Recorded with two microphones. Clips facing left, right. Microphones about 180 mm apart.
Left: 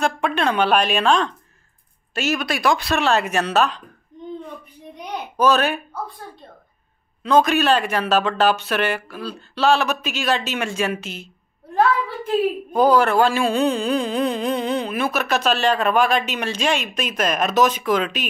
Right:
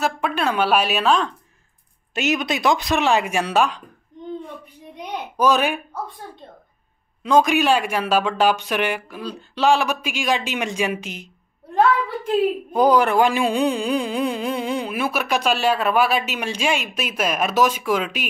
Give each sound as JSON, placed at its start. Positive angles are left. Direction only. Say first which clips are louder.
{"t": 0.0, "sound": "a woman's voice", "louder": "left 1 dB", "side_deg": -5}
{"t": 2.1, "sound": "speech", "louder": "right 1 dB", "side_deg": -20}
{"t": 5.4, "sound": "speech", "louder": "left 1 dB", "side_deg": -10}
{"t": 7.2, "sound": "speech", "louder": "even", "side_deg": -15}
{"t": 12.7, "sound": "speech", "louder": "left 1 dB", "side_deg": -15}